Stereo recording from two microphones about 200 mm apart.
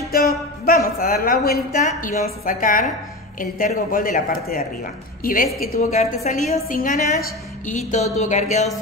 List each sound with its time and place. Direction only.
0.1 s a woman's voice: 50° left (ahead or behind)